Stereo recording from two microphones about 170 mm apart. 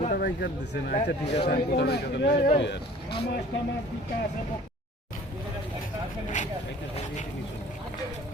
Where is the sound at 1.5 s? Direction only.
75° left (ahead or behind); by 2.8 s 90° left.